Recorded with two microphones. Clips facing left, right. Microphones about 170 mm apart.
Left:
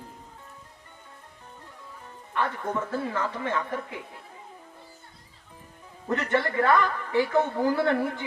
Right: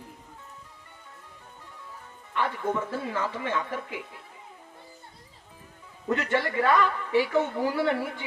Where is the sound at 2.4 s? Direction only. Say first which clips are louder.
Right 1 dB; 20° right (ahead or behind).